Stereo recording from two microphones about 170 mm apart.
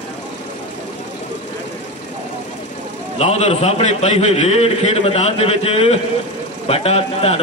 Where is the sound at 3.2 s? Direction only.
40° left (ahead or behind).